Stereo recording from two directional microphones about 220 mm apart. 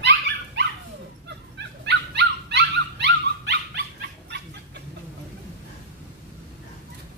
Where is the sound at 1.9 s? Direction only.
50° right (ahead or behind).